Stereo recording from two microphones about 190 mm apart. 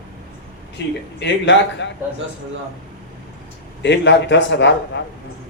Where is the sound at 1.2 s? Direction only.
70° left (ahead or behind).